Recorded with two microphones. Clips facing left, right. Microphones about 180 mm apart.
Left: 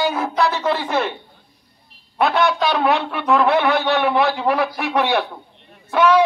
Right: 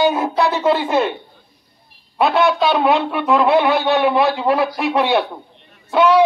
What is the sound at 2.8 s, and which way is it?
A man's voice, 20° right (ahead or behind).